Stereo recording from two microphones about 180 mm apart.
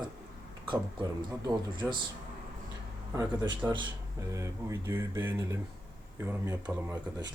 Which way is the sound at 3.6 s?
10° right (ahead or behind).